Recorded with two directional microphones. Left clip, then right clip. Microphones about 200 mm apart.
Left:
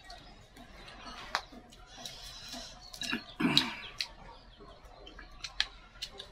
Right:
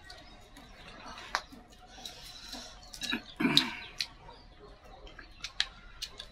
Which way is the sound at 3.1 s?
10° left (ahead or behind).